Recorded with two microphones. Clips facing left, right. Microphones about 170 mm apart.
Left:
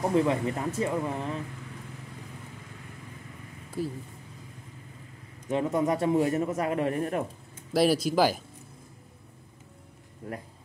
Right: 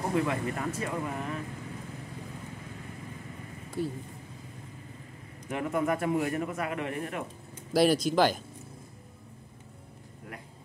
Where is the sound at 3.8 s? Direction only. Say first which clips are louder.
Even; centre (ahead or behind).